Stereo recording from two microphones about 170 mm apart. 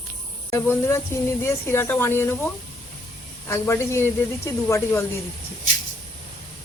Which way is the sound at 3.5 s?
15° left (ahead or behind).